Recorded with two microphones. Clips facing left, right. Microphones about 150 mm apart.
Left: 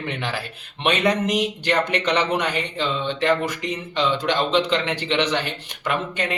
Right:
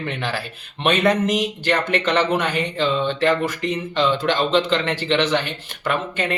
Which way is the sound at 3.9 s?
15° left (ahead or behind).